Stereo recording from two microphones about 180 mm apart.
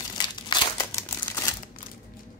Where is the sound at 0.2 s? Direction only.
25° left (ahead or behind).